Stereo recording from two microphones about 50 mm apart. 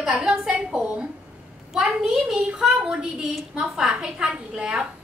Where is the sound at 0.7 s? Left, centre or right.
Centre.